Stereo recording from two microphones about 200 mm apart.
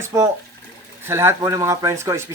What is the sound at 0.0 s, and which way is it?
Speech, 15° right (ahead or behind).